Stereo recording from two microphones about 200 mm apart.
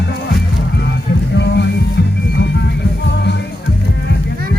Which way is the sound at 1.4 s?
60° left (ahead or behind).